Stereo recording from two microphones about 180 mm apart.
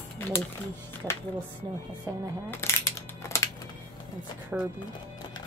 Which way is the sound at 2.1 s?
20° right (ahead or behind).